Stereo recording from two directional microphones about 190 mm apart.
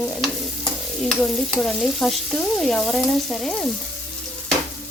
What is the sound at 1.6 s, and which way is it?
Speech, centre (ahead or behind).